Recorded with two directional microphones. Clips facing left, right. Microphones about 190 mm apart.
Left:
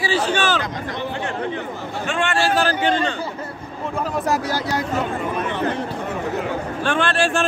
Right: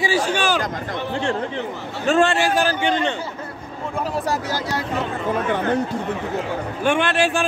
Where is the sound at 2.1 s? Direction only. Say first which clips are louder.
Right 7 dB; 40° right (ahead or behind).